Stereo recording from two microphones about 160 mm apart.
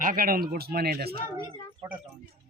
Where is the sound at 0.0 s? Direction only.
60° right (ahead or behind); by 1.1 s 75° right (ahead or behind).